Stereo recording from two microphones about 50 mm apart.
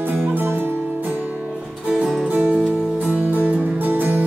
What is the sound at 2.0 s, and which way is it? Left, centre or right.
Music, centre.